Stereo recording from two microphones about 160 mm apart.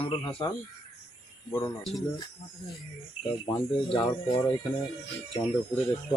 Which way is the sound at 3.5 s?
25° left (ahead or behind).